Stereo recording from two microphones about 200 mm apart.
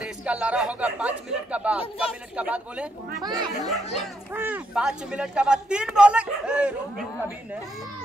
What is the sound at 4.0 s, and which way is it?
Speech, 10° right (ahead or behind).